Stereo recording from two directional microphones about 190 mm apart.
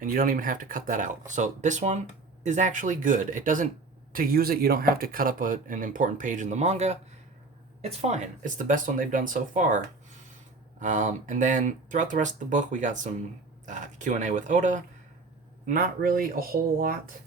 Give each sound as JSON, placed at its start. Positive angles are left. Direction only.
{"t": 0.0, "sound": "speech", "side_deg": -45}